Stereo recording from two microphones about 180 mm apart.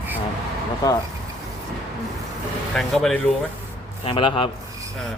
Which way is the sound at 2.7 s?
Centre (ahead or behind).